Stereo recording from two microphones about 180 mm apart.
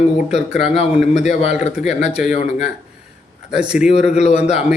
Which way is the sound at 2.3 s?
40° left (ahead or behind).